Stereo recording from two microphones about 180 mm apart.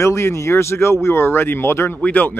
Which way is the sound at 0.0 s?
15° left (ahead or behind).